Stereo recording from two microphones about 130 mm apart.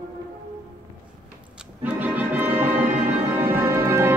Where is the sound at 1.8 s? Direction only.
15° right (ahead or behind).